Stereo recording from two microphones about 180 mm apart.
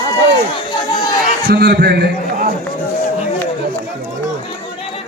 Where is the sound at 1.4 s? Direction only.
60° right (ahead or behind).